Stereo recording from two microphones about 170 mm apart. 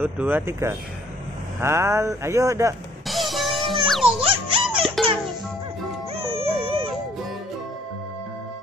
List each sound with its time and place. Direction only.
0.0 s speech: 10° right (ahead or behind)
3.1 s music: centre (ahead or behind)
4.2 s music: 30° right (ahead or behind)
6.1 s music: 35° right (ahead or behind)